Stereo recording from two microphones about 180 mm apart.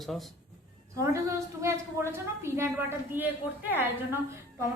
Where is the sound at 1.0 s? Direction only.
15° right (ahead or behind).